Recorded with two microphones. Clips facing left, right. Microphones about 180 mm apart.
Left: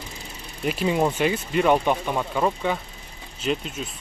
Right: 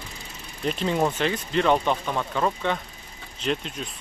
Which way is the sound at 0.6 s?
5° left (ahead or behind).